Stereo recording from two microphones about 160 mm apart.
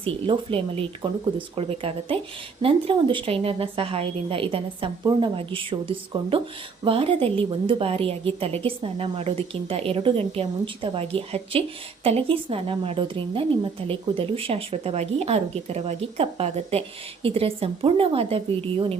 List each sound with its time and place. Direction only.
0.0 s a woman's voice: 35° right (ahead or behind)